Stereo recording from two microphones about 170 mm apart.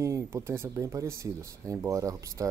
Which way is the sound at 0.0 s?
15° right (ahead or behind).